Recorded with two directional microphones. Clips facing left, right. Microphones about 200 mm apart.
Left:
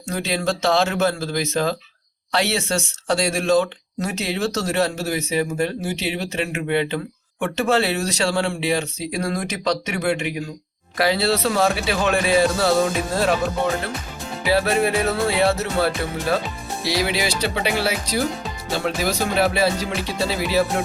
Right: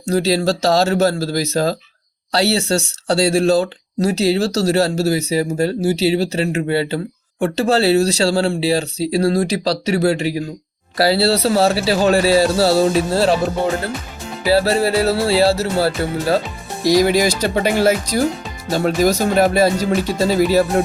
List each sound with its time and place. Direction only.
0.1 s speech: 35° right (ahead or behind)
16.8 s speech: 45° right (ahead or behind)